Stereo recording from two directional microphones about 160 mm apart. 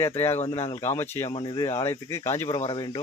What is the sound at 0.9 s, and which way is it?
Speech, 40° left (ahead or behind).